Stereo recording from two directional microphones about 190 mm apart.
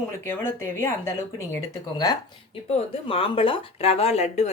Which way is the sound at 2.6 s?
30° left (ahead or behind).